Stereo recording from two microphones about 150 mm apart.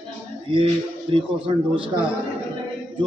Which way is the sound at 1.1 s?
35° right (ahead or behind).